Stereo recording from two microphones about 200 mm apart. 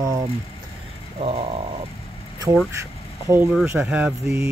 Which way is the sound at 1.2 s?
30° right (ahead or behind).